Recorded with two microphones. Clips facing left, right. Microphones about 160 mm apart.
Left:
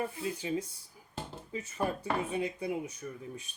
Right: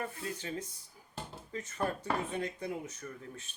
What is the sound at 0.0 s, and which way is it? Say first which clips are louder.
Speech: left 4 dB; 10° left (ahead or behind).